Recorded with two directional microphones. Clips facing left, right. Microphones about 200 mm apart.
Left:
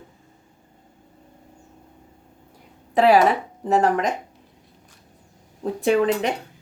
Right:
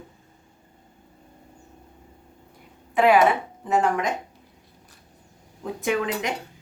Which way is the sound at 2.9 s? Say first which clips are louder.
Left 2 dB; 35° left (ahead or behind).